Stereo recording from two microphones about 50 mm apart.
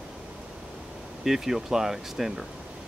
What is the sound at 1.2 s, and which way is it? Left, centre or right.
Speech, centre.